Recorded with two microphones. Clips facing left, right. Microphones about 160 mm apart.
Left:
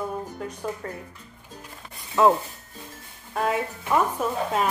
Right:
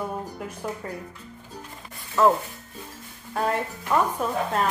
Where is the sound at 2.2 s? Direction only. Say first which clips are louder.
Left 1 dB; 15° left (ahead or behind).